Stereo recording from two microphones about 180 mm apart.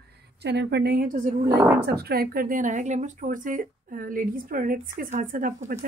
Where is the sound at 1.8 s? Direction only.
60° right (ahead or behind).